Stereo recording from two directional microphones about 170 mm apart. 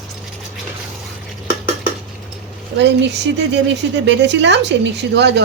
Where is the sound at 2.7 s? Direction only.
90° right.